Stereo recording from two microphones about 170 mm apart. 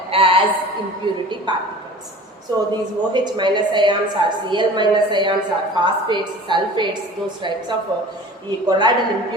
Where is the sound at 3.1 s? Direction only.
25° right (ahead or behind).